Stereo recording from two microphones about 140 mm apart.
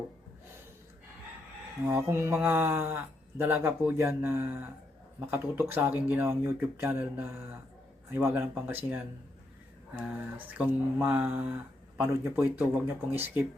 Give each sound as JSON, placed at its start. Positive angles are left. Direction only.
{"t": 1.9, "sound": "speech", "side_deg": -15}
{"t": 10.0, "sound": "speech", "side_deg": -10}